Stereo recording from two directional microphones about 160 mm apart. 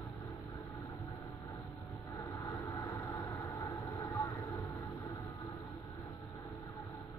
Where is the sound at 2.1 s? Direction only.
20° left (ahead or behind).